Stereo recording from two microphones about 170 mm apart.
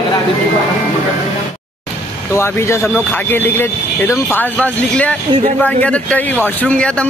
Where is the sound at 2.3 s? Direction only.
15° left (ahead or behind).